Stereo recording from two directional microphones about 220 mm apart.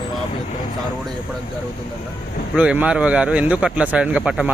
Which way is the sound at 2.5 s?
5° right (ahead or behind).